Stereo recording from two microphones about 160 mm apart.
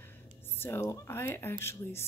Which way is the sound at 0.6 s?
15° left (ahead or behind).